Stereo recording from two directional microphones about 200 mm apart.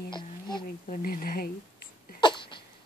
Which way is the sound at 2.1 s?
25° left (ahead or behind).